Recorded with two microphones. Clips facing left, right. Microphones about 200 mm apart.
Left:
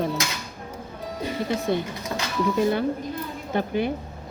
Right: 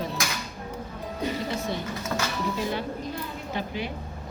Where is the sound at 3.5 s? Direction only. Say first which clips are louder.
Left 8 dB; 55° left (ahead or behind).